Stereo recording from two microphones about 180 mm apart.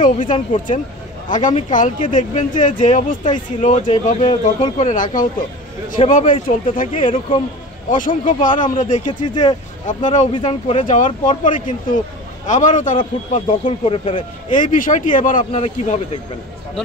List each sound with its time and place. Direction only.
0.0 s speech: 45° left (ahead or behind); by 4.7 s 30° left (ahead or behind)
4.7 s speech: 45° left (ahead or behind)
6.9 s speech: 30° left (ahead or behind)
7.9 s speech: 50° left (ahead or behind)
9.0 s speech: 25° left (ahead or behind)
9.8 s speech: 45° left (ahead or behind)
10.3 s speech: 35° left (ahead or behind)
13.5 s speech: 30° left (ahead or behind)
14.5 s speech: 45° left (ahead or behind)